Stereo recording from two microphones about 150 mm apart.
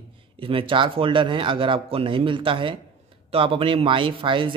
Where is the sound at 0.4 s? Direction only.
35° right (ahead or behind).